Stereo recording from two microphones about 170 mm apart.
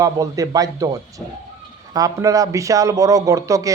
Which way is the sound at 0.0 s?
20° right (ahead or behind).